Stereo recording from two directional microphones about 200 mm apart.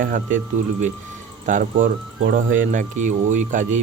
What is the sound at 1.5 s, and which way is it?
Speech, 40° right (ahead or behind).